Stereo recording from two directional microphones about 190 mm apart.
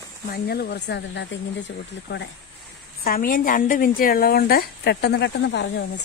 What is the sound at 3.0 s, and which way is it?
A woman's voice, 50° left (ahead or behind).